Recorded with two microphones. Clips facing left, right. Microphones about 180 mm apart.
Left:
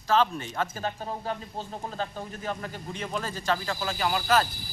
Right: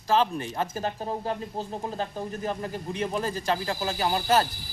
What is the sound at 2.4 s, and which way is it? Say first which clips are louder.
Speech: right 2 dB; 30° right (ahead or behind).